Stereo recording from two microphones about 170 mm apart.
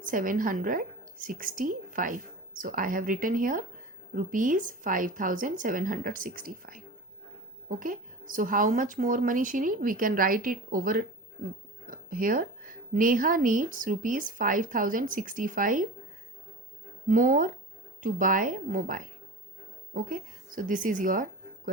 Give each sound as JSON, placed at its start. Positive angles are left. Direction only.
{"t": 0.0, "sound": "speech", "side_deg": -50}
{"t": 17.1, "sound": "speech", "side_deg": -50}